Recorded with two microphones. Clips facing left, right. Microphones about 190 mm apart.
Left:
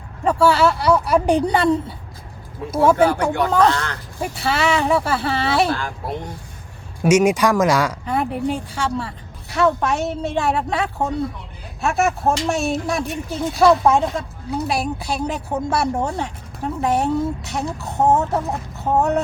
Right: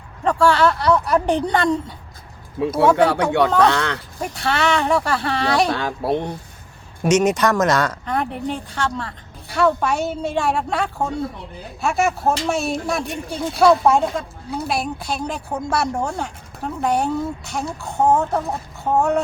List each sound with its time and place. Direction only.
0.3 s a woman's voice: 5° left (ahead or behind)
2.6 s speech: 75° right (ahead or behind)
4.2 s speech: 5° left (ahead or behind)
5.7 s speech: 70° right (ahead or behind)
7.0 s speech: 10° left (ahead or behind)